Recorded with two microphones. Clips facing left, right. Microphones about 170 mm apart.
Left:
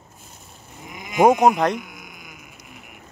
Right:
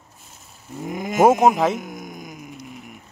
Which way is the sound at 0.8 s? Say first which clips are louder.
Right 3 dB; 45° right (ahead or behind).